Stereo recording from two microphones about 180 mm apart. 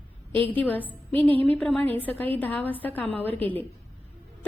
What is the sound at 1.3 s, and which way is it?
Speech, 30° right (ahead or behind).